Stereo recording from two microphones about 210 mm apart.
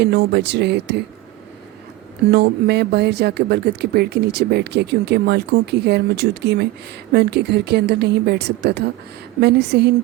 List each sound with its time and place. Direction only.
0.0 s speech: 50° right (ahead or behind)
2.3 s speech: 50° right (ahead or behind)